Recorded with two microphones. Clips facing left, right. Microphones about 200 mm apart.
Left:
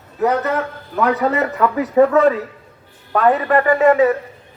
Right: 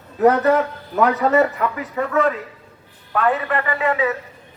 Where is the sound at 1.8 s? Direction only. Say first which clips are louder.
Left 9 dB; 35° left (ahead or behind).